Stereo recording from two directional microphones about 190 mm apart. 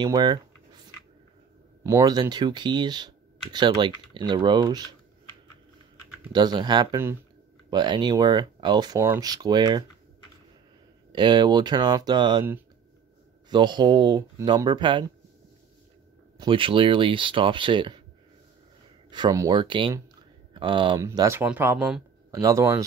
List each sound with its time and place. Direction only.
0.0 s speech: 25° right (ahead or behind)
1.8 s speech: 15° right (ahead or behind)
6.3 s speech: 20° right (ahead or behind)
11.1 s speech: 25° right (ahead or behind)
13.5 s speech: 25° right (ahead or behind)
16.3 s speech: 25° right (ahead or behind)
19.0 s speech: 25° right (ahead or behind)